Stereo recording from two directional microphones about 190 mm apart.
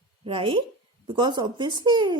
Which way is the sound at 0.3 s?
25° right (ahead or behind).